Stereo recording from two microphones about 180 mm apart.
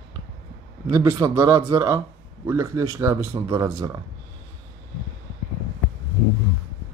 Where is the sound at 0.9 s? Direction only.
20° right (ahead or behind).